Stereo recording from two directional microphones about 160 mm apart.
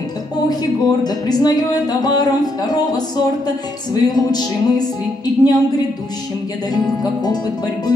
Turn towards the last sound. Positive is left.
turn(degrees=25)  # may be behind; listen again after turning